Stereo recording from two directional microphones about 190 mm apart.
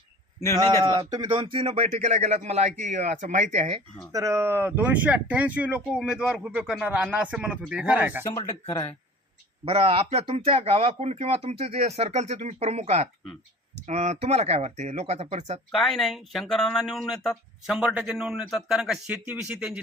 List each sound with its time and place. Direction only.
0.5 s speech: 20° right (ahead or behind)
4.1 s speech: 15° right (ahead or behind)
8.2 s speech: 15° left (ahead or behind)
9.6 s speech: 30° right (ahead or behind)
15.7 s speech: centre (ahead or behind)